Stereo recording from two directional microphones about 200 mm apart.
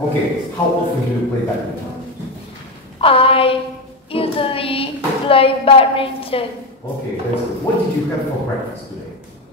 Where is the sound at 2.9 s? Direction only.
30° left (ahead or behind).